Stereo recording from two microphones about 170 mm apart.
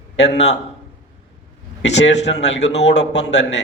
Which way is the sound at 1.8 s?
90° left.